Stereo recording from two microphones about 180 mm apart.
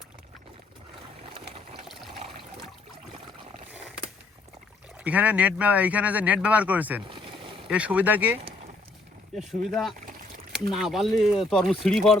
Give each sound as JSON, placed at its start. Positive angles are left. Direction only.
{"t": 4.9, "sound": "speech", "side_deg": -10}
{"t": 7.1, "sound": "boat", "side_deg": -30}
{"t": 7.7, "sound": "speech", "side_deg": -5}
{"t": 9.4, "sound": "speech", "side_deg": 0}